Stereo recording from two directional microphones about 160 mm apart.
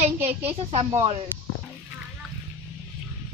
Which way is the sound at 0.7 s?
40° right (ahead or behind).